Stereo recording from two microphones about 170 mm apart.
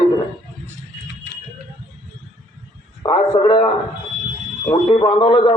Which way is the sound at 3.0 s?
25° left (ahead or behind).